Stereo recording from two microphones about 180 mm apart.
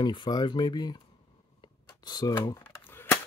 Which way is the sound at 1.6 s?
25° left (ahead or behind).